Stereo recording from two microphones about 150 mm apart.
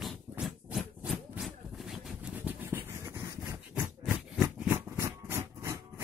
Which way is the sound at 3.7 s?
5° right (ahead or behind).